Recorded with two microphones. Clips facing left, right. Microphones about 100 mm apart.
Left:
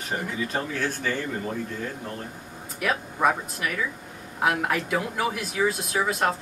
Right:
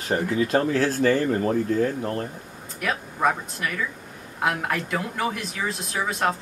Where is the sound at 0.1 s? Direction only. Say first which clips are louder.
Right 7 dB; 55° right (ahead or behind).